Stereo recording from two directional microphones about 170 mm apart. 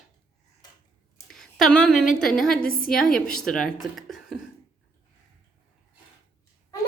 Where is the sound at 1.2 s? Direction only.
Centre (ahead or behind).